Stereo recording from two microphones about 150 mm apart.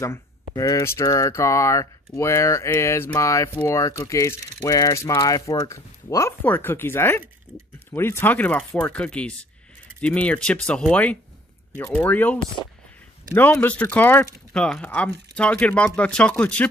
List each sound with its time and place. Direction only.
0.0 s speech: 20° left (ahead or behind)